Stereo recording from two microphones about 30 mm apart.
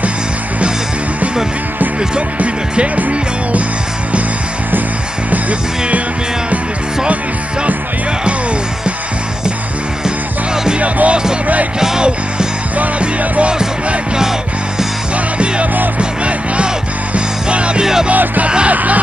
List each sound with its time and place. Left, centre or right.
2.1 s speech: right
3.0 s music: right
5.3 s music: right
10.0 s music: right
10.8 s music: right
15.3 s music: right
18.1 s music: right
18.7 s music: right